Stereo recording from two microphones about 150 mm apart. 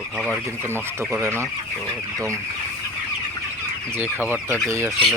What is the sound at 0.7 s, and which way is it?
Speech, 15° right (ahead or behind).